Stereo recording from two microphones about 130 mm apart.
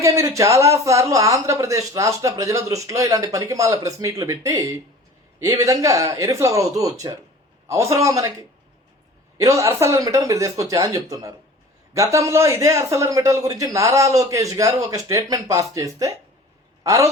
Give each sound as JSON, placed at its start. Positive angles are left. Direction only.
{"t": 0.0, "sound": "speech", "side_deg": -25}